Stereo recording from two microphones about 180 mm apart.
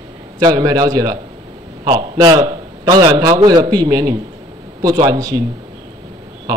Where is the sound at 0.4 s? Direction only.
20° right (ahead or behind).